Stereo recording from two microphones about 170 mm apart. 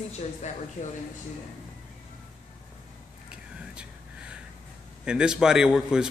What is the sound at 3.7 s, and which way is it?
Vehicle, 5° right (ahead or behind).